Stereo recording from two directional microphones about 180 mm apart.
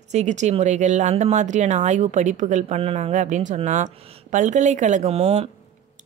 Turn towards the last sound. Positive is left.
turn(degrees=-35)  # may be behind; listen again after turning